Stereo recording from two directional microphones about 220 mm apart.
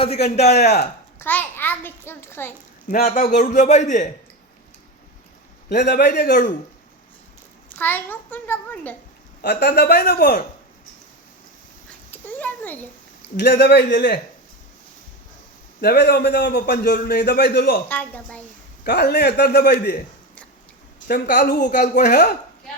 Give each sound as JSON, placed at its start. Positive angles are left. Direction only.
{"t": 0.3, "sound": "a woman's voice", "side_deg": 30}
{"t": 0.6, "sound": "a man's voice", "side_deg": 50}
{"t": 1.2, "sound": "a child's voice", "side_deg": 10}
{"t": 2.9, "sound": "a woman's voice", "side_deg": 35}
{"t": 5.6, "sound": "a man's voice", "side_deg": 45}
{"t": 7.8, "sound": "a child's voice", "side_deg": 10}
{"t": 9.4, "sound": "a man's voice", "side_deg": 45}
{"t": 12.1, "sound": "a child's voice", "side_deg": 10}
{"t": 13.3, "sound": "a man's voice", "side_deg": 50}
{"t": 15.8, "sound": "a man's voice", "side_deg": 45}
{"t": 17.8, "sound": "a child's voice", "side_deg": 5}
{"t": 18.9, "sound": "a man's voice", "side_deg": 45}
{"t": 21.1, "sound": "a woman's voice", "side_deg": 45}